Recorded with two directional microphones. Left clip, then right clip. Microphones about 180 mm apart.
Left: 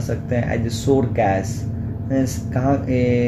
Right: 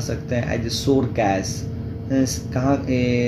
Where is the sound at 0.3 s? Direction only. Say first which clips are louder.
Left 1 dB; 20° left (ahead or behind).